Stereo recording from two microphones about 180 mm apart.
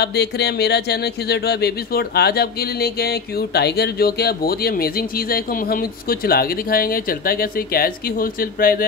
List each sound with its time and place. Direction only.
0.0 s speech: 65° left (ahead or behind)